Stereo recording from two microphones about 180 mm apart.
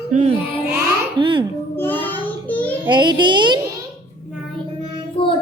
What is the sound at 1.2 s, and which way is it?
Speech, 30° right (ahead or behind).